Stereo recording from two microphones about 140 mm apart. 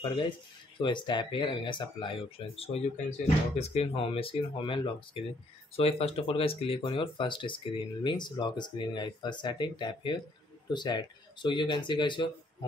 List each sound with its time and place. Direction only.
0.0 s speech: 35° left (ahead or behind)